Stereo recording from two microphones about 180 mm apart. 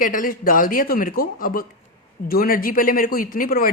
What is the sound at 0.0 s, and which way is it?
A woman's voice, 50° left (ahead or behind).